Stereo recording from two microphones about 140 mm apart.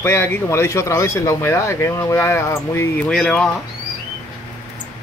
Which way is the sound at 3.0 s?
5° left (ahead or behind).